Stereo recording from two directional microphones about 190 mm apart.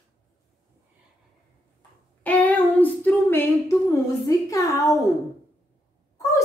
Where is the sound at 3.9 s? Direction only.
15° left (ahead or behind).